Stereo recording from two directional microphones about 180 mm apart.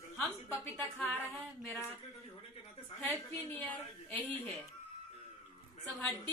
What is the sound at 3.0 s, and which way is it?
Speech, 10° left (ahead or behind).